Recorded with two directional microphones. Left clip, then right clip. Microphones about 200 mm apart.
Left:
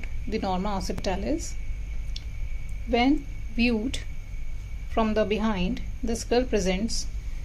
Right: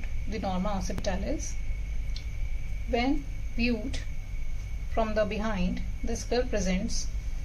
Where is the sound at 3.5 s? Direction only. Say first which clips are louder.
Left 5 dB; 50° left (ahead or behind).